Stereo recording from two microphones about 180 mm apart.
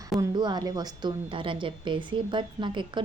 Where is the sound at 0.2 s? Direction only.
25° right (ahead or behind).